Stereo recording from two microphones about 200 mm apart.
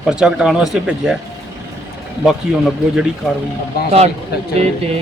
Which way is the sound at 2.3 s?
Centre (ahead or behind).